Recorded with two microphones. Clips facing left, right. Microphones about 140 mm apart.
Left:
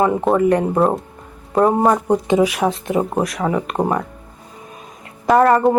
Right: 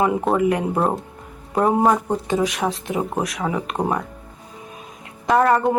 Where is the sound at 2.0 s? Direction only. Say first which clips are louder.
Left 6 dB; 20° left (ahead or behind).